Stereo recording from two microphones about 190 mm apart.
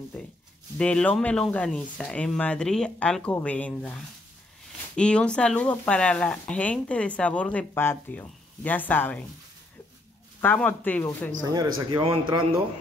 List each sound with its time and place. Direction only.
0.1 s speech: 5° left (ahead or behind)
10.4 s speech: 10° left (ahead or behind)
11.4 s speech: 20° right (ahead or behind)